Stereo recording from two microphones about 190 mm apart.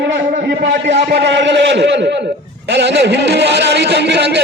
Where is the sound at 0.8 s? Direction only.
65° right (ahead or behind).